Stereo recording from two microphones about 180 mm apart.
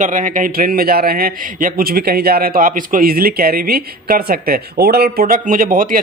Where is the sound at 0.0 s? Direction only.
45° right (ahead or behind).